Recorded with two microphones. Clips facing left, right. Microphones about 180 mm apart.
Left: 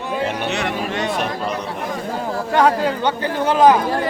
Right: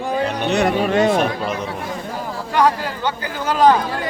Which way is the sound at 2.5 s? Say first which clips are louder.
Left 1 dB; 25° left (ahead or behind).